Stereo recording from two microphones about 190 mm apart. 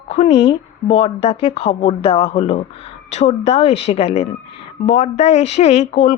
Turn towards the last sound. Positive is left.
turn(degrees=35)  # may be behind; listen again after turning